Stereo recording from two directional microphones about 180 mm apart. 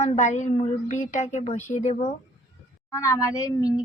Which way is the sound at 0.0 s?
40° left (ahead or behind).